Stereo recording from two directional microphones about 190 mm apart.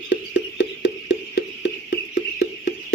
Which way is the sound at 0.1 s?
65° left (ahead or behind).